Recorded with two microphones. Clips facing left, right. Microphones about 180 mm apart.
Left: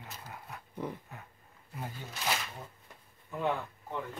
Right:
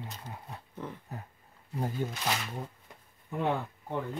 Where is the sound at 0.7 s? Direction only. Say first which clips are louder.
Left 3 dB; 10° left (ahead or behind).